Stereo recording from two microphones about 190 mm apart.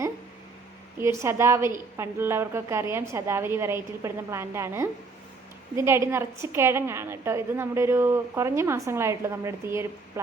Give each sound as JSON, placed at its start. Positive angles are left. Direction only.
{"t": 0.9, "sound": "a woman's voice", "side_deg": -15}